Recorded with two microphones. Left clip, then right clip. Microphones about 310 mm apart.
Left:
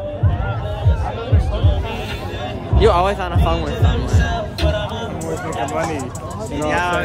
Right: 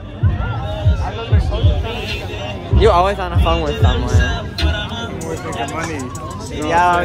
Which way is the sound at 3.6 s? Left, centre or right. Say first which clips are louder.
Right 3 dB; left.